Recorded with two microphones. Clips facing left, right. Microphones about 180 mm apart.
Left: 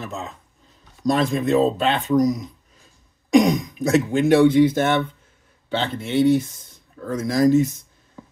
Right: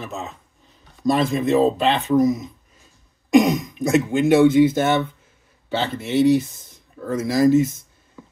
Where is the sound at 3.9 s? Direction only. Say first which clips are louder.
Even; 5° right (ahead or behind).